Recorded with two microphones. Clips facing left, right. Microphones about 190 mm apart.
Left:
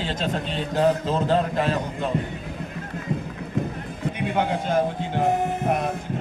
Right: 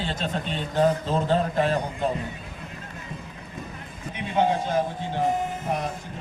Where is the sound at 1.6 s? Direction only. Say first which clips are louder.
Even; 45° right (ahead or behind).